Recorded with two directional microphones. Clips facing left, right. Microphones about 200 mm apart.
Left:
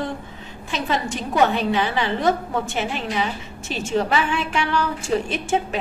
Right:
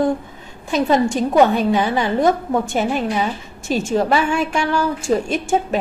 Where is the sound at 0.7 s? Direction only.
45° right (ahead or behind).